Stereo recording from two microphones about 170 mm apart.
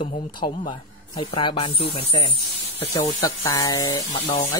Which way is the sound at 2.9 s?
20° left (ahead or behind).